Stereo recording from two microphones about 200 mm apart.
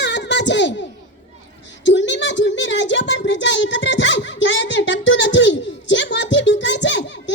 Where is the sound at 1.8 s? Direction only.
65° left (ahead or behind).